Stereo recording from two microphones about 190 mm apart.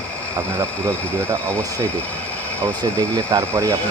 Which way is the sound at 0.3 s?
10° right (ahead or behind).